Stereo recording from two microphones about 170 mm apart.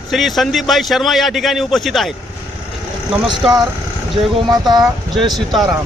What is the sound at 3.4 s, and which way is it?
Speech, centre (ahead or behind).